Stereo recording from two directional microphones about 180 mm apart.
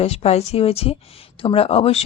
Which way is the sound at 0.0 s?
35° left (ahead or behind).